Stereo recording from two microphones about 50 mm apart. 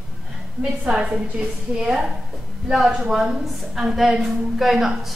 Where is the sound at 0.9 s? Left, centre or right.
Right.